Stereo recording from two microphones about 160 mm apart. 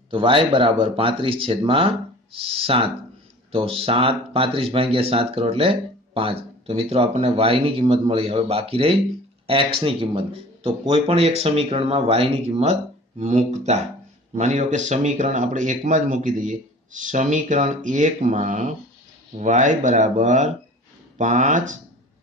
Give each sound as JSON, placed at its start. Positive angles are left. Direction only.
{"t": 0.1, "sound": "speech", "side_deg": -35}